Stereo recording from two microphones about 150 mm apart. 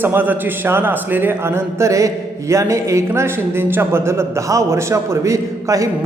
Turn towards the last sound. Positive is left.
turn(degrees=-20)  # may be behind; listen again after turning